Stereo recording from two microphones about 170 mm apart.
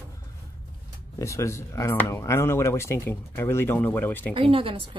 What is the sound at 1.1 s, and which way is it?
Speech, 20° left (ahead or behind).